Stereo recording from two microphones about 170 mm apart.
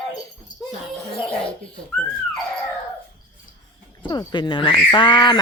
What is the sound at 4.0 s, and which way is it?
Speech, 25° left (ahead or behind).